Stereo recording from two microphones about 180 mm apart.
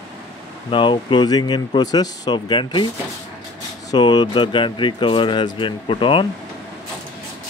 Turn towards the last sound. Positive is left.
turn(degrees=30)  # may be behind; listen again after turning